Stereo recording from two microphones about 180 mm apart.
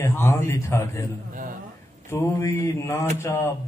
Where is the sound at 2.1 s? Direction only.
15° left (ahead or behind).